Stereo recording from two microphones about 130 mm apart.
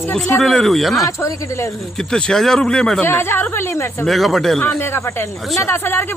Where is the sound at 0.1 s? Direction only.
5° left (ahead or behind).